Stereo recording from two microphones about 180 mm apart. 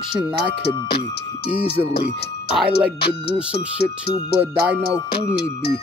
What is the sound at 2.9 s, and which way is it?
Speech, 65° left (ahead or behind).